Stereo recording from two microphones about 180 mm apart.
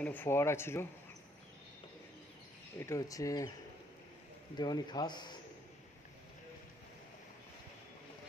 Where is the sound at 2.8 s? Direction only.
15° left (ahead or behind).